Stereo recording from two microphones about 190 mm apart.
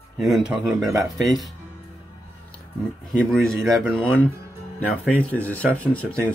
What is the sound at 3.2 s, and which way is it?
Speech, centre (ahead or behind).